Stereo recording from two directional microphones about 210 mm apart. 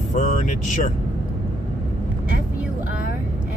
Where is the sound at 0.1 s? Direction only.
40° left (ahead or behind).